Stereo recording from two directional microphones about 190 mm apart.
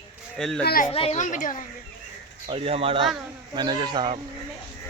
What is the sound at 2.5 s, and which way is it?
Speech, 30° right (ahead or behind).